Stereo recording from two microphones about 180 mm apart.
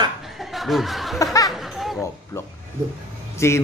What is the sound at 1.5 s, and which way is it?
Laughter, centre (ahead or behind).